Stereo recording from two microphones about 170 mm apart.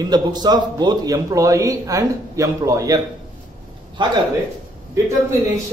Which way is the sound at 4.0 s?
30° right (ahead or behind).